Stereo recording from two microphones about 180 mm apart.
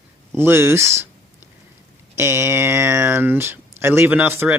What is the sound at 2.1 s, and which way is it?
Speech, 15° right (ahead or behind).